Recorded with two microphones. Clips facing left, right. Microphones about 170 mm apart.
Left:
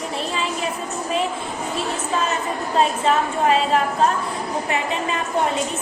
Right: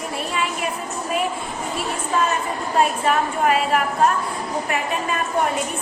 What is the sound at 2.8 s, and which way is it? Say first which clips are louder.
A woman's voice: left 1 dB; 25° left (ahead or behind).